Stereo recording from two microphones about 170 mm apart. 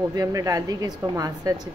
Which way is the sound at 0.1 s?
20° right (ahead or behind).